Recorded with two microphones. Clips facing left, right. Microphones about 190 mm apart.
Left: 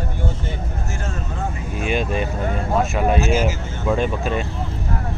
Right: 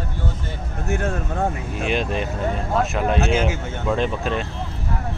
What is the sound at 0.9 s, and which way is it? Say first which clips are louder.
Speech: right 10 dB; 60° right (ahead or behind).